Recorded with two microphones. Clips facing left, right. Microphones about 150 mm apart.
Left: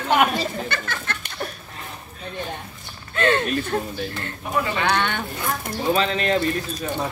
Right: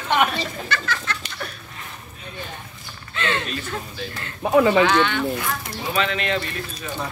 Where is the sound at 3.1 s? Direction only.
45° left (ahead or behind).